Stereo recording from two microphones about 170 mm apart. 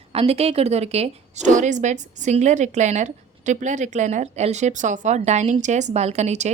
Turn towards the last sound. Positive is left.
turn(degrees=-40)  # may be behind; listen again after turning